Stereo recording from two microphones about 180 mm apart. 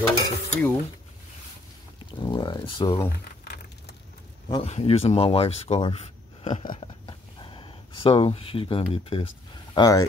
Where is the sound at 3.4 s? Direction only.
65° left (ahead or behind).